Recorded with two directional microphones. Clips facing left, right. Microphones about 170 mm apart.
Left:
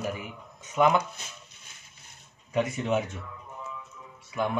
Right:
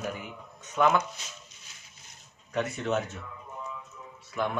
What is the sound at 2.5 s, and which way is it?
Speech, 10° left (ahead or behind).